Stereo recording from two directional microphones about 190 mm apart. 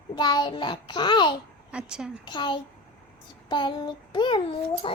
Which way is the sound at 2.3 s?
25° left (ahead or behind).